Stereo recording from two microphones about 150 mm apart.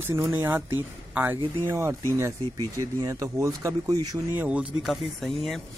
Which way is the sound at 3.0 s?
20° right (ahead or behind).